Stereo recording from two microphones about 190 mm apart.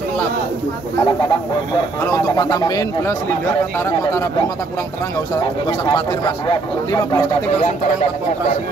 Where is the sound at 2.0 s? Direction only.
15° left (ahead or behind).